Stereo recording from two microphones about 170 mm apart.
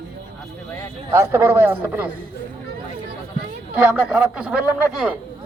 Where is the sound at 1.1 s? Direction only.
15° right (ahead or behind).